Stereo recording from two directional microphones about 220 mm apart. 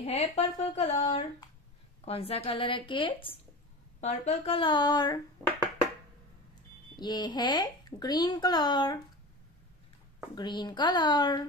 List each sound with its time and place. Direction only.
0.0 s speech: 30° left (ahead or behind)
7.0 s speech: 20° left (ahead or behind)
10.3 s speech: 20° left (ahead or behind)